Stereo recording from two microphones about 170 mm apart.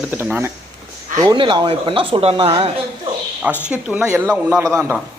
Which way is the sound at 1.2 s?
25° right (ahead or behind).